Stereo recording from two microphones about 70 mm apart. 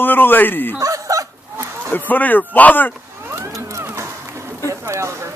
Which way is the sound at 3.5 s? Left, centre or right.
Right.